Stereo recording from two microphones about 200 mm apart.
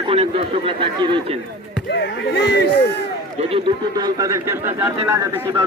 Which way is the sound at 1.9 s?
55° left (ahead or behind).